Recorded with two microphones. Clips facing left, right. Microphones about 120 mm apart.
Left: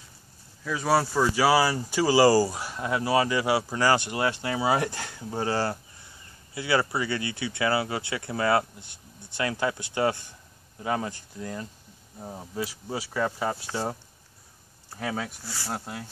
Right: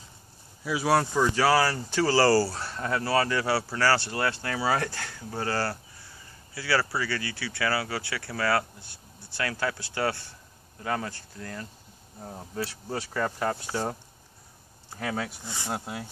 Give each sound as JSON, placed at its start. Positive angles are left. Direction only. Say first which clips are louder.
{"t": 0.7, "sound": "speech", "louder": "even", "side_deg": -5}
{"t": 1.1, "sound": "speech", "louder": "left 1 dB", "side_deg": 10}
{"t": 15.0, "sound": "speech", "louder": "even", "side_deg": 0}
{"t": 15.4, "sound": "speech", "louder": "right 1 dB", "side_deg": -20}
{"t": 15.7, "sound": "speech", "louder": "right 1 dB", "side_deg": -5}